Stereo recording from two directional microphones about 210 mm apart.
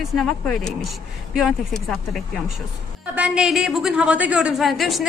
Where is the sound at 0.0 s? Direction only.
Centre (ahead or behind).